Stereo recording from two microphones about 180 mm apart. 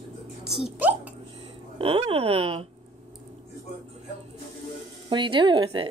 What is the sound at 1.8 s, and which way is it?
Speech, 30° right (ahead or behind).